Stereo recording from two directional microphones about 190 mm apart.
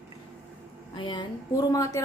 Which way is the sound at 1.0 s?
25° left (ahead or behind).